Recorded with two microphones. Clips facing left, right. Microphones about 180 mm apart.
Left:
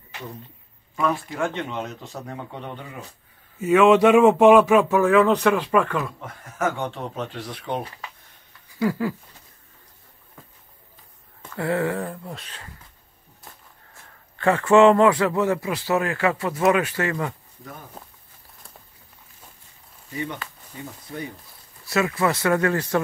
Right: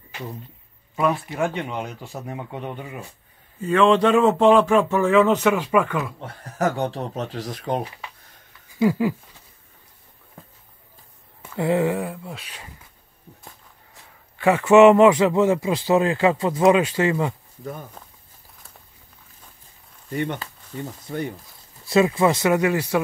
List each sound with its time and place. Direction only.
1.5 s speech: 10° right (ahead or behind)
3.5 s a man's voice: 10° left (ahead or behind)
4.9 s speech: centre (ahead or behind)
6.2 s speech: 35° right (ahead or behind)
8.7 s speech: 15° right (ahead or behind)
11.4 s speech: 15° right (ahead or behind)
14.4 s speech: 10° right (ahead or behind)
18.0 s walk: 5° left (ahead or behind)
20.1 s speech: 60° right (ahead or behind)
21.8 s speech: 25° right (ahead or behind)